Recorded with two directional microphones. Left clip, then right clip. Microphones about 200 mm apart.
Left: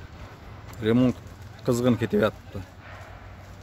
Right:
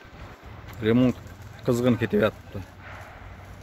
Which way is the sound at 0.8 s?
Centre (ahead or behind).